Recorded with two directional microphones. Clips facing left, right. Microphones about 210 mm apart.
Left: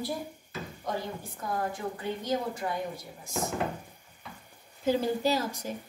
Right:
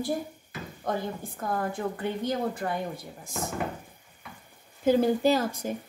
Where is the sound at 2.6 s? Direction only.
55° right (ahead or behind).